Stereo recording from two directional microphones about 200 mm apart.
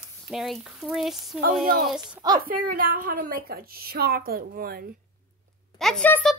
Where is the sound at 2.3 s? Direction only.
45° right (ahead or behind).